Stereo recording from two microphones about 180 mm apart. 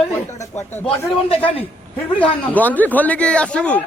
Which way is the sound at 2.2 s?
10° left (ahead or behind).